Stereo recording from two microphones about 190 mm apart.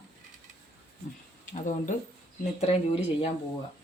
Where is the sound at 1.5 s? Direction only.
40° left (ahead or behind).